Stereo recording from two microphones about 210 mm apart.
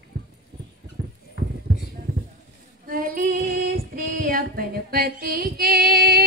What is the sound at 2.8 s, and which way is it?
Female singing, 40° right (ahead or behind).